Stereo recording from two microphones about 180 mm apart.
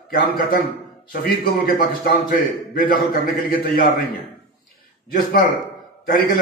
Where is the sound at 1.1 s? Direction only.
55° left (ahead or behind).